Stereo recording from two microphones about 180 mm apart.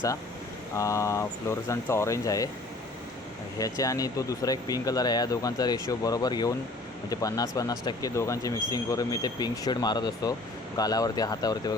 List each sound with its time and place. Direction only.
0.8 s speech: 15° left (ahead or behind)
3.6 s speech: 20° left (ahead or behind)